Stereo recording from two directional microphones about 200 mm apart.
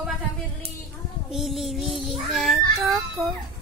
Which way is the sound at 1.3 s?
Centre (ahead or behind).